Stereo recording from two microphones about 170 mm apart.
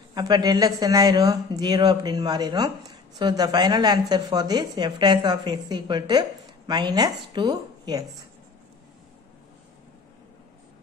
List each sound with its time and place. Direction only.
0.1 s a woman's voice: 25° right (ahead or behind)